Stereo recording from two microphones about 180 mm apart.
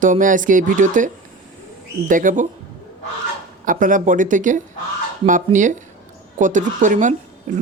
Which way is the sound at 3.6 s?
45° right (ahead or behind).